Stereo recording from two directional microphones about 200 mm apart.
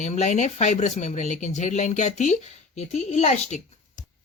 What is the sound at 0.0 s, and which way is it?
Speech, 35° left (ahead or behind).